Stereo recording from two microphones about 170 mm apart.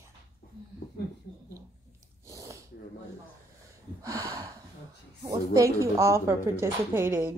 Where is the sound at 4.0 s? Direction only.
20° right (ahead or behind).